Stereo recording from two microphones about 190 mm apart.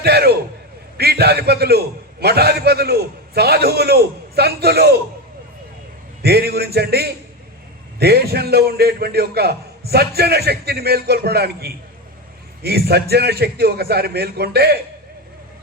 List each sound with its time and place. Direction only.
0.0 s a man's voice: 55° right (ahead or behind)
6.2 s a man's voice: 60° right (ahead or behind)